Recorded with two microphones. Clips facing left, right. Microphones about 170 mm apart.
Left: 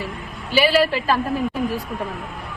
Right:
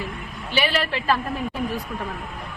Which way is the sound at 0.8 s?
35° left (ahead or behind).